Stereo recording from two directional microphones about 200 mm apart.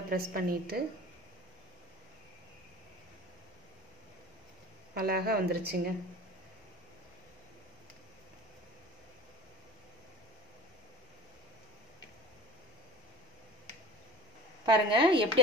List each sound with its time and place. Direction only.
0.1 s speech: 50° right (ahead or behind)
4.9 s speech: 50° right (ahead or behind)
14.7 s a woman's voice: 25° right (ahead or behind)